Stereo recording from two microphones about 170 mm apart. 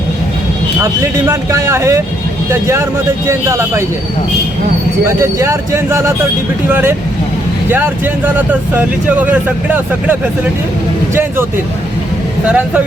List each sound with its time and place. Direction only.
1.3 s speech: 15° right (ahead or behind)
5.0 s speech: 15° right (ahead or behind)
12.5 s speech: 10° right (ahead or behind)